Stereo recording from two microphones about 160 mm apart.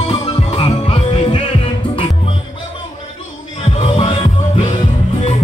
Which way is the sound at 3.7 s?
40° left (ahead or behind).